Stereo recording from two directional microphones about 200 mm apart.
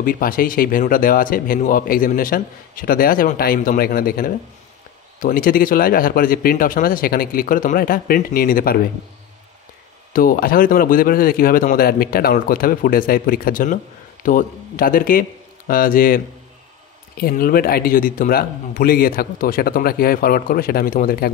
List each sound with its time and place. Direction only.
0.0 s speech: 45° left (ahead or behind)
10.1 s a man's voice: 45° left (ahead or behind)
17.2 s speech: 45° left (ahead or behind)